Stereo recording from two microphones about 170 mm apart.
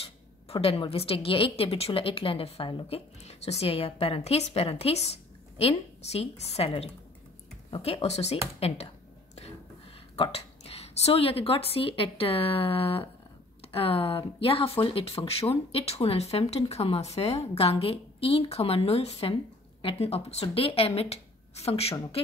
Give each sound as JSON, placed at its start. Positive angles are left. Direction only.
{"t": 0.0, "sound": "speech", "side_deg": 35}
{"t": 10.1, "sound": "speech", "side_deg": 35}